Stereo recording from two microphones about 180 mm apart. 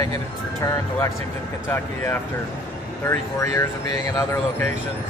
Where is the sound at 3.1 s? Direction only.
15° left (ahead or behind).